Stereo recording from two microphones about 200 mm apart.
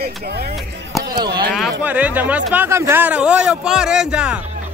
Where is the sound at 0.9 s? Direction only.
Centre (ahead or behind).